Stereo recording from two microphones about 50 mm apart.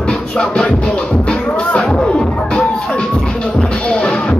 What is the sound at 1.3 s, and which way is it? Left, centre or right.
Music, left.